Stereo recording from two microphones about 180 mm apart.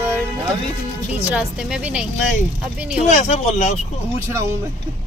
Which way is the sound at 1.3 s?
5° right (ahead or behind).